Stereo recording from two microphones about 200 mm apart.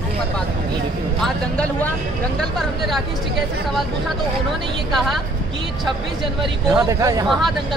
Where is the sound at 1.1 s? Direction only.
5° left (ahead or behind).